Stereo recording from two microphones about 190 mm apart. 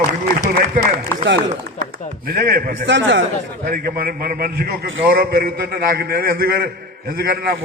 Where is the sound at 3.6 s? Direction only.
50° right (ahead or behind).